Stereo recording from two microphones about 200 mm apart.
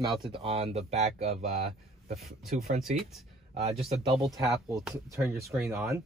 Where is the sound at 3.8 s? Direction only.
Centre (ahead or behind).